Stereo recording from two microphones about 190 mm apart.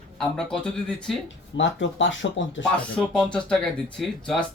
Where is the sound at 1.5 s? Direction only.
75° left (ahead or behind).